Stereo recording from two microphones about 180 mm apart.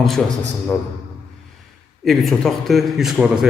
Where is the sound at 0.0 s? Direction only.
Centre (ahead or behind).